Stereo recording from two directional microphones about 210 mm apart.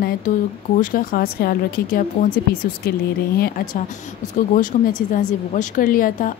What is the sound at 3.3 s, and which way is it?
Speech, 45° left (ahead or behind).